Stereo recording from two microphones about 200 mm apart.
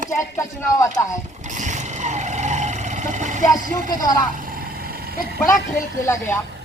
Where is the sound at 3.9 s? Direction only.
20° left (ahead or behind).